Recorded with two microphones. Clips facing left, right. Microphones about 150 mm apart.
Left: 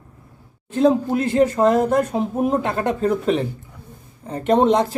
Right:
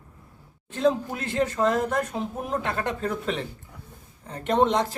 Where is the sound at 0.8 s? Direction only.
35° left (ahead or behind).